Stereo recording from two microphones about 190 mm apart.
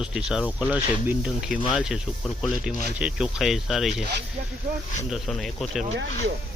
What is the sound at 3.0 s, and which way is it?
Speech, 5° right (ahead or behind).